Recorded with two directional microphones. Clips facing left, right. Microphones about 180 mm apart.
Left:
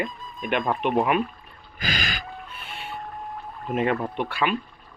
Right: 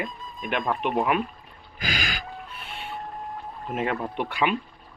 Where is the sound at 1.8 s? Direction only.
10° right (ahead or behind).